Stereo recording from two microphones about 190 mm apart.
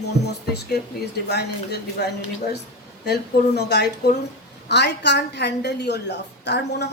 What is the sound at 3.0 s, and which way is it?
A woman's voice, 60° left (ahead or behind).